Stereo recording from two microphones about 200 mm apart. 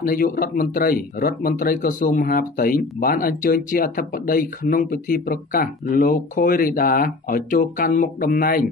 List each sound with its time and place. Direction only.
0.0 s speech: 45° left (ahead or behind)